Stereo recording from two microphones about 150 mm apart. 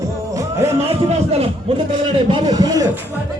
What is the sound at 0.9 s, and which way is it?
Speech, 40° right (ahead or behind).